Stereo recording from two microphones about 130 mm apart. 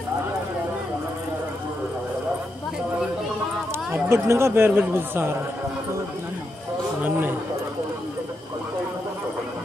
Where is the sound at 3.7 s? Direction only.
20° right (ahead or behind).